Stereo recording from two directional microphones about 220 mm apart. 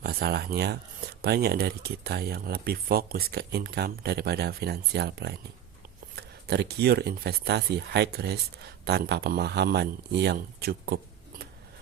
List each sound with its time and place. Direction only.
0.0 s speech: 45° right (ahead or behind)